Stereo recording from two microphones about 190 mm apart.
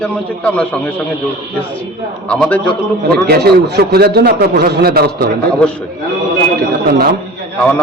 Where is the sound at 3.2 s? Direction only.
55° right (ahead or behind).